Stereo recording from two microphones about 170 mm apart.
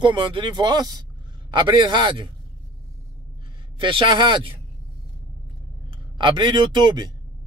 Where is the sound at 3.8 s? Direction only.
30° right (ahead or behind).